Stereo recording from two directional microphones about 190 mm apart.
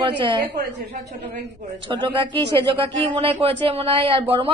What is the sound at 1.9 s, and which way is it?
A woman's voice, 25° right (ahead or behind).